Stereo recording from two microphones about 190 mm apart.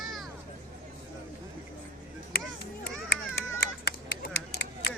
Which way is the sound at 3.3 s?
60° left (ahead or behind).